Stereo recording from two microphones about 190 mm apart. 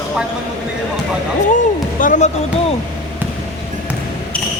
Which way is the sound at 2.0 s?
40° left (ahead or behind).